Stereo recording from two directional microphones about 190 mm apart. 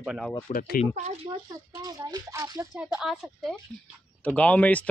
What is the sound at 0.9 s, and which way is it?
Speech, 35° right (ahead or behind).